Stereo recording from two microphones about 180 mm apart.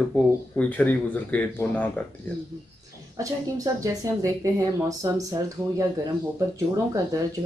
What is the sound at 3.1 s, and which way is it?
Speech, 20° right (ahead or behind).